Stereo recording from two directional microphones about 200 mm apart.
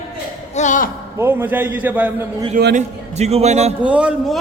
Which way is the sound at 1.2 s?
10° right (ahead or behind).